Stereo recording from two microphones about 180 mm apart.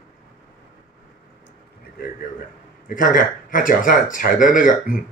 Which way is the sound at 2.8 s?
50° left (ahead or behind).